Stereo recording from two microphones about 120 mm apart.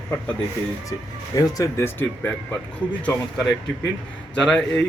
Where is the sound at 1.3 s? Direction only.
30° left (ahead or behind).